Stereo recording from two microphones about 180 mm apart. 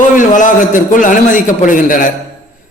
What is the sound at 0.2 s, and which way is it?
A man's voice, 45° left (ahead or behind).